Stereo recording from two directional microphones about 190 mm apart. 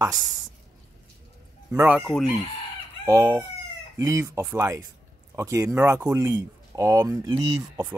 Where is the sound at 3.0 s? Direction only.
15° right (ahead or behind).